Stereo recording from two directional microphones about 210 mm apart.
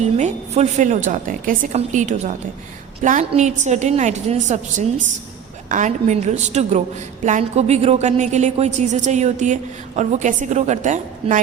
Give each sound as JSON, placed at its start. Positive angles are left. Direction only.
{"t": 0.0, "sound": "a woman's voice", "side_deg": -35}